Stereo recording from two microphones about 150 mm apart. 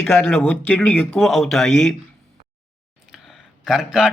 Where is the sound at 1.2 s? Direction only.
Centre (ahead or behind).